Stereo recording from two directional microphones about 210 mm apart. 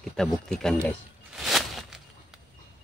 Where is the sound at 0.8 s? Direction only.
Centre (ahead or behind).